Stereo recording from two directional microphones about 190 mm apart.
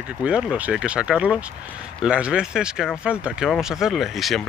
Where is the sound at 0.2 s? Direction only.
5° right (ahead or behind).